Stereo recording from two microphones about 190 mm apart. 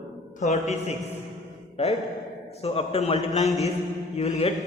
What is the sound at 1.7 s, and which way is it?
Speech, 35° left (ahead or behind).